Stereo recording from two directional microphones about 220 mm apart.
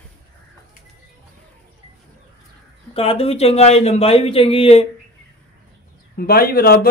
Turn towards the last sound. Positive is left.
turn(degrees=45)  # may be behind; listen again after turning